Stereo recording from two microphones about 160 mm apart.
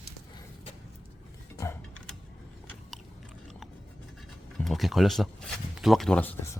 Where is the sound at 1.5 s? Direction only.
15° left (ahead or behind).